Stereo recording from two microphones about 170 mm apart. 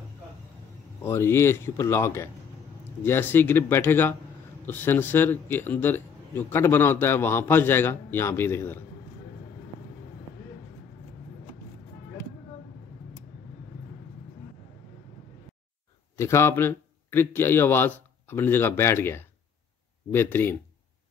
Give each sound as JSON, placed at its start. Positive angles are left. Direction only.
{"t": 1.0, "sound": "a man's voice", "side_deg": 15}
{"t": 16.2, "sound": "a man's voice", "side_deg": 15}